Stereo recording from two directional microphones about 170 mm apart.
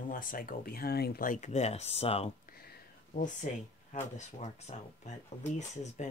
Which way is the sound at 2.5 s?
60° left (ahead or behind).